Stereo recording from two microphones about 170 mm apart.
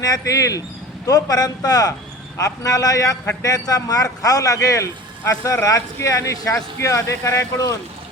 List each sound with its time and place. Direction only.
0.0 s a man's voice: 20° left (ahead or behind)